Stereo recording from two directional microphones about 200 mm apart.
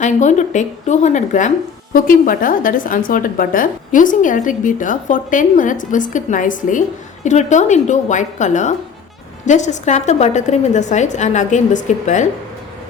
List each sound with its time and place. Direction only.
0.0 s a woman's voice: 35° left (ahead or behind)